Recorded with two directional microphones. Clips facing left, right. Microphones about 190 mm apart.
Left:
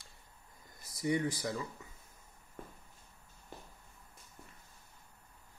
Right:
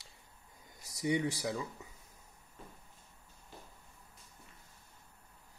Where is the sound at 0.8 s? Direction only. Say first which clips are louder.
Right 1 dB; 75° right (ahead or behind).